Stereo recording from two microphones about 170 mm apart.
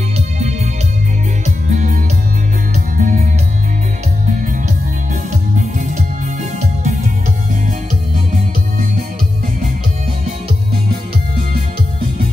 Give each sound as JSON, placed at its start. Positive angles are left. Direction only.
{"t": 1.4, "sound": "music", "side_deg": -45}
{"t": 3.0, "sound": "music", "side_deg": -50}
{"t": 6.6, "sound": "music", "side_deg": -45}